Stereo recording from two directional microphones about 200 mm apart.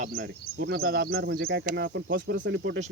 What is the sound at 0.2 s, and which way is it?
Speech, 55° right (ahead or behind).